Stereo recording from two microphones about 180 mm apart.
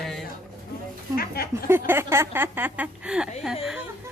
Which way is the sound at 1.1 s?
60° left (ahead or behind).